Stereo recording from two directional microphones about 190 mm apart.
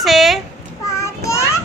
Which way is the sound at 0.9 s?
15° left (ahead or behind).